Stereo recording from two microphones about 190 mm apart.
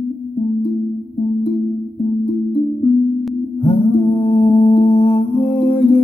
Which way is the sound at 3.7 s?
35° left (ahead or behind).